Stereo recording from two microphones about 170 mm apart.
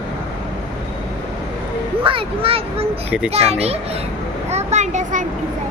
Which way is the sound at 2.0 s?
30° right (ahead or behind).